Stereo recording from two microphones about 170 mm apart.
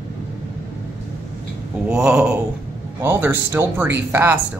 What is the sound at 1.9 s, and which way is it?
Speech, 5° right (ahead or behind).